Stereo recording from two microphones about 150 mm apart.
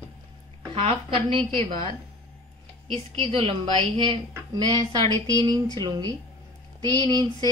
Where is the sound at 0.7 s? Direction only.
40° right (ahead or behind).